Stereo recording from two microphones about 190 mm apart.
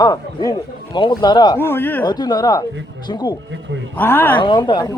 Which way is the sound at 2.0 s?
20° left (ahead or behind).